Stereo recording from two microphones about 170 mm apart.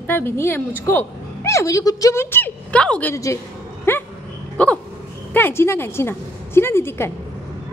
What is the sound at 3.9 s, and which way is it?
Dog, 10° left (ahead or behind).